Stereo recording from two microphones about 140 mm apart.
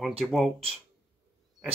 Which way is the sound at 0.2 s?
Centre (ahead or behind).